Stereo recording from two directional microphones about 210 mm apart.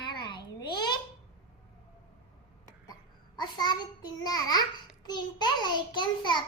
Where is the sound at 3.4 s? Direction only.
20° left (ahead or behind).